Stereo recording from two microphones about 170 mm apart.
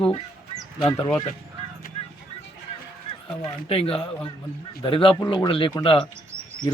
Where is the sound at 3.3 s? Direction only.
30° left (ahead or behind).